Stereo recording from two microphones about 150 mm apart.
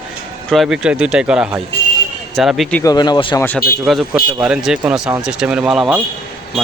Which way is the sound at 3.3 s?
10° left (ahead or behind).